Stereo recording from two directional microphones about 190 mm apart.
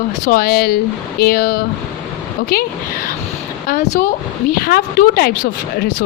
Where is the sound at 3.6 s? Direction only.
40° left (ahead or behind).